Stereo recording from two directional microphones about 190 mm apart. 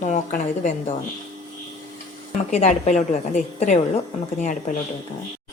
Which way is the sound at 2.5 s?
35° left (ahead or behind).